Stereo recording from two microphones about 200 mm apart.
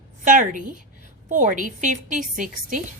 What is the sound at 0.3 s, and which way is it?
A woman's voice, 40° right (ahead or behind).